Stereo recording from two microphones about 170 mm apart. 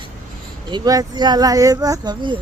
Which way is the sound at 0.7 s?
25° right (ahead or behind).